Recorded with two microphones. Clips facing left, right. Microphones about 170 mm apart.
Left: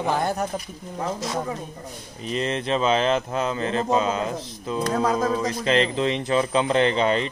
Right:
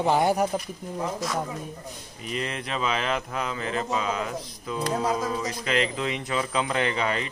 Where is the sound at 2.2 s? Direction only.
25° left (ahead or behind).